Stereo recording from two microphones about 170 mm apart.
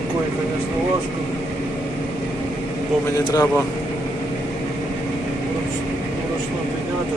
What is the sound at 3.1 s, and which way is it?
Speech, 20° left (ahead or behind).